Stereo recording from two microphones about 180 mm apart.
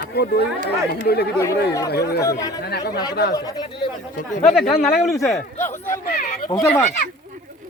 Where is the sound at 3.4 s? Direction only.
20° left (ahead or behind).